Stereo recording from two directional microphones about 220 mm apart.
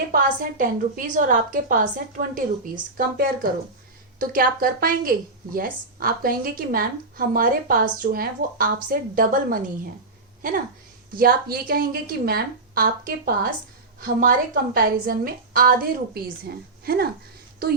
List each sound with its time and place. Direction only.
0.1 s a woman's voice: 40° right (ahead or behind)
11.1 s a woman's voice: 40° right (ahead or behind)